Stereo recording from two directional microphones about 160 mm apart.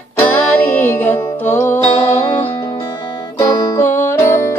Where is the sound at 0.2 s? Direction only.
10° left (ahead or behind).